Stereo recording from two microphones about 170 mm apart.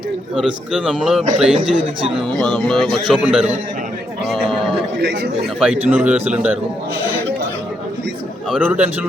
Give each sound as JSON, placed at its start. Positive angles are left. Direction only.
{"t": 0.3, "sound": "speech", "side_deg": -5}
{"t": 4.9, "sound": "a man's voice", "side_deg": -75}
{"t": 5.5, "sound": "a man's voice", "side_deg": -5}
{"t": 8.4, "sound": "a man's voice", "side_deg": -5}